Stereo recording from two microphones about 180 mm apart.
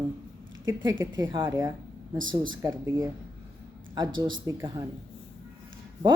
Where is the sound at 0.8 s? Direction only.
90° right.